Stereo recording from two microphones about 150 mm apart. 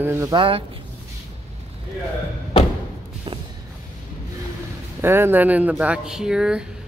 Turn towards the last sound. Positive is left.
turn(degrees=-5)  # may be behind; listen again after turning